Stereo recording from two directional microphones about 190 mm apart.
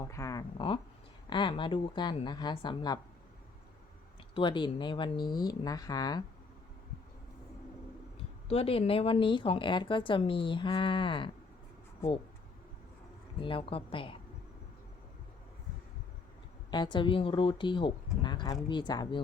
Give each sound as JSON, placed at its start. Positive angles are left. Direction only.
{"t": 0.0, "sound": "speech", "side_deg": 15}
{"t": 4.4, "sound": "speech", "side_deg": 25}
{"t": 8.4, "sound": "speech", "side_deg": 30}
{"t": 13.4, "sound": "speech", "side_deg": 30}
{"t": 16.7, "sound": "speech", "side_deg": 25}